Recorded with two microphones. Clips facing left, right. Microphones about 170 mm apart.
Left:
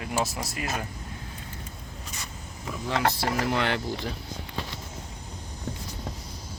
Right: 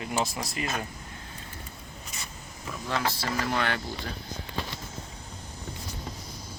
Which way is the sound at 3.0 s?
60° left (ahead or behind).